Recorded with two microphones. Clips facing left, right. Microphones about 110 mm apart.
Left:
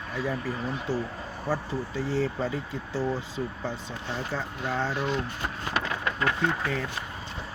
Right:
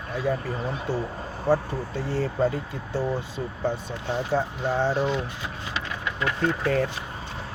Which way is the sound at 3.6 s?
50° right (ahead or behind).